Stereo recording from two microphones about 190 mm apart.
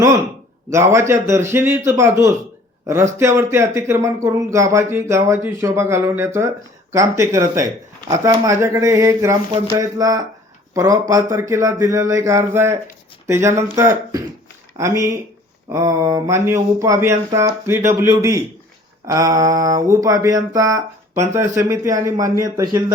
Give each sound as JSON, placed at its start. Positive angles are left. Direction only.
{"t": 0.7, "sound": "speech", "side_deg": -15}